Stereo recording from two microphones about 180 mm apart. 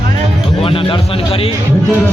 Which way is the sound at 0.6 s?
30° left (ahead or behind).